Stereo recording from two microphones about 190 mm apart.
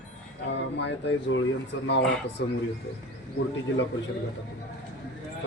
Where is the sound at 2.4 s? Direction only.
75° left (ahead or behind).